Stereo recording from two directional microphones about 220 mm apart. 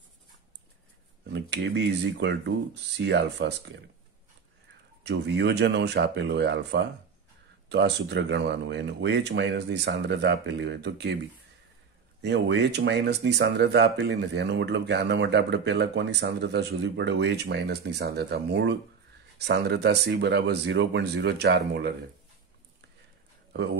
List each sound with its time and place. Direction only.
1.3 s speech: 55° right (ahead or behind)
5.0 s speech: 55° right (ahead or behind)
12.2 s speech: 50° right (ahead or behind)